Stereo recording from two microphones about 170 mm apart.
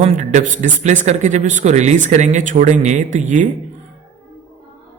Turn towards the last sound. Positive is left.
turn(degrees=-50)  # may be behind; listen again after turning